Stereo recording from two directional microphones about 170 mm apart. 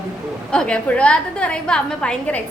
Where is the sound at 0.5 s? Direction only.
5° left (ahead or behind).